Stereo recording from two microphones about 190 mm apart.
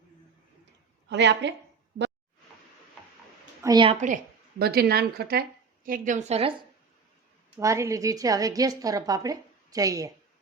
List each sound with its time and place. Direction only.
1.0 s a woman's voice: 65° right (ahead or behind)
3.6 s a woman's voice: 20° right (ahead or behind)
4.6 s a woman's voice: 55° right (ahead or behind); by 6.5 s 35° right (ahead or behind)
7.5 s a woman's voice: 15° right (ahead or behind)